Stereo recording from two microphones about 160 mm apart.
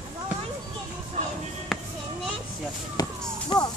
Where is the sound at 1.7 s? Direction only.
Centre (ahead or behind).